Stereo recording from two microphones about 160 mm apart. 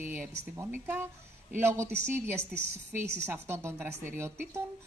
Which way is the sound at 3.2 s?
15° right (ahead or behind).